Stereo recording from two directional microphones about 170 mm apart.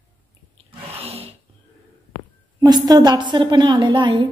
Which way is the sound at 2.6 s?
25° right (ahead or behind).